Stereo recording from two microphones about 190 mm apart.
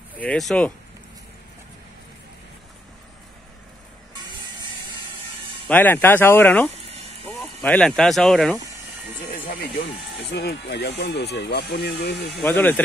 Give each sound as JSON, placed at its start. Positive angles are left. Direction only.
{"t": 0.2, "sound": "speech", "side_deg": 5}
{"t": 5.7, "sound": "speech", "side_deg": 10}
{"t": 9.3, "sound": "speech", "side_deg": 50}
{"t": 10.3, "sound": "speech", "side_deg": 65}
{"t": 12.4, "sound": "speech", "side_deg": 10}